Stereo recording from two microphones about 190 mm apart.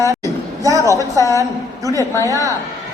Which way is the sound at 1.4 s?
15° right (ahead or behind).